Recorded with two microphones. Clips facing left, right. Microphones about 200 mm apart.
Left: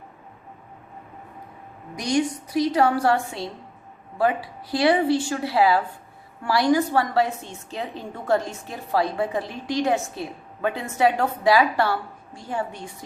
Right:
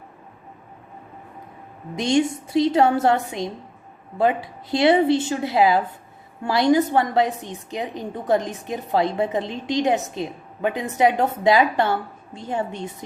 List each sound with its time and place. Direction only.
2.0 s a woman's voice: 25° right (ahead or behind)